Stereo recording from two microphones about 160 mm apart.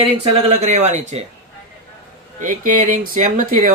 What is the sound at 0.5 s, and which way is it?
Speech, 45° right (ahead or behind).